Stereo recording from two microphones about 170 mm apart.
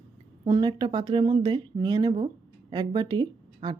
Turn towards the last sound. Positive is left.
turn(degrees=-25)  # may be behind; listen again after turning